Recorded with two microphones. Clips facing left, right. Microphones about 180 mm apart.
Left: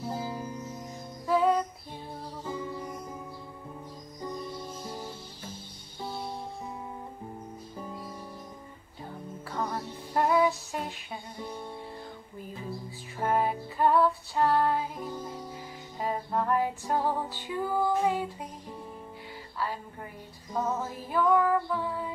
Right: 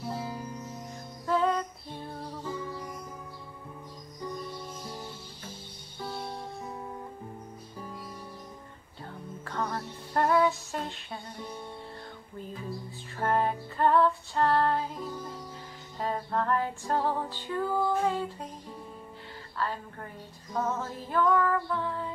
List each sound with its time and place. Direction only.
0.1 s music: 25° left (ahead or behind)
1.2 s music: 10° left (ahead or behind)
2.4 s music: 25° left (ahead or behind)
9.4 s music: 10° left (ahead or behind)
13.2 s music: 10° left (ahead or behind)
19.6 s a woman's voice: 10° left (ahead or behind)
20.5 s female singing: 10° left (ahead or behind)